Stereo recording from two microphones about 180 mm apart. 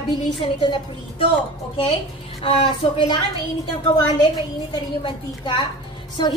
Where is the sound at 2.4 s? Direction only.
30° left (ahead or behind).